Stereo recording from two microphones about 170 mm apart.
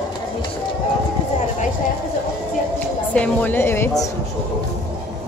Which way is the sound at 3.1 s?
10° left (ahead or behind).